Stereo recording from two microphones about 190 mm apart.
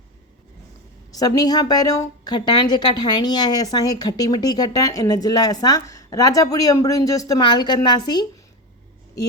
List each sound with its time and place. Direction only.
1.1 s a woman's voice: 20° left (ahead or behind)